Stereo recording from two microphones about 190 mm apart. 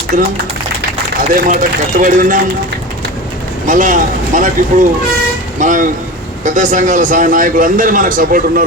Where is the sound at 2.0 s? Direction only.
45° right (ahead or behind).